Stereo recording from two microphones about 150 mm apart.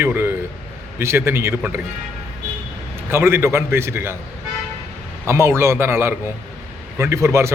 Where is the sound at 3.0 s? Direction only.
15° right (ahead or behind).